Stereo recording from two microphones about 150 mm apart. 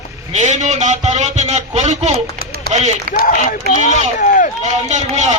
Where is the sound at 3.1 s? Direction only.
65° left (ahead or behind).